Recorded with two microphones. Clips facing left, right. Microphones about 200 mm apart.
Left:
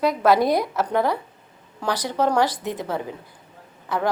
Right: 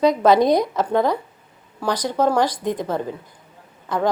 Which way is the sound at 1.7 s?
15° right (ahead or behind).